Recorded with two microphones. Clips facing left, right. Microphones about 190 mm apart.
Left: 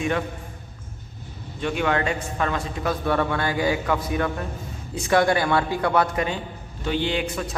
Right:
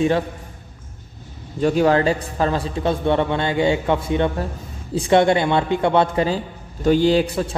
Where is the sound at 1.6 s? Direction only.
35° right (ahead or behind).